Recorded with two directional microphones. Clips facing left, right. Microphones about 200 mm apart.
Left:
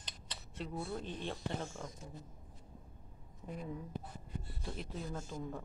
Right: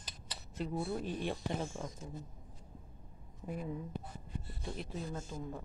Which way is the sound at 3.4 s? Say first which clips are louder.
Right 3 dB; 5° right (ahead or behind).